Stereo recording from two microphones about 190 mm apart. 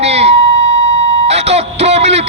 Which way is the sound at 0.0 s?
35° right (ahead or behind).